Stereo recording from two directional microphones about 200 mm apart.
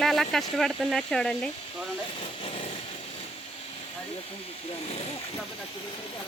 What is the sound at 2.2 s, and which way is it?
Jackhammer, 25° left (ahead or behind).